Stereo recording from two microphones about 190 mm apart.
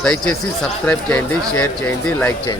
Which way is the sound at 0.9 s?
5° left (ahead or behind).